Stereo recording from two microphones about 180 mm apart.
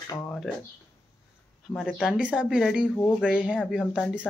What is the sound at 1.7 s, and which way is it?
Speech, centre (ahead or behind).